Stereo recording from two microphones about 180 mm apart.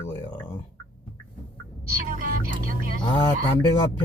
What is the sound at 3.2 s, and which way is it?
Speech, 25° left (ahead or behind).